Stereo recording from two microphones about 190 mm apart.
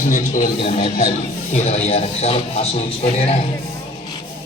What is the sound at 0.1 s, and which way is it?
A man's voice, 45° left (ahead or behind).